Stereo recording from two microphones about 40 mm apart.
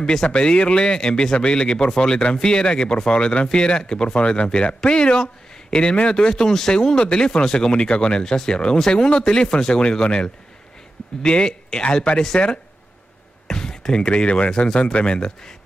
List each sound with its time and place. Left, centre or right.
0.1 s a man's voice: left
13.5 s speech: centre